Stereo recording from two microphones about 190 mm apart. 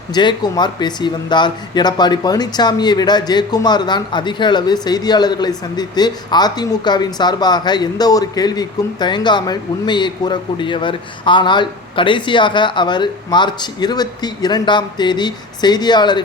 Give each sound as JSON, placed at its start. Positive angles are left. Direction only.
{"t": 0.1, "sound": "speech", "side_deg": 25}